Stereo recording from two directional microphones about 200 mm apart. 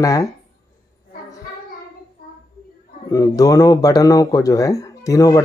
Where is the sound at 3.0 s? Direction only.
15° left (ahead or behind).